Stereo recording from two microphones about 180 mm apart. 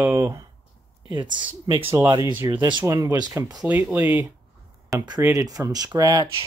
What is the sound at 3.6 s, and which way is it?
Speech, 10° right (ahead or behind).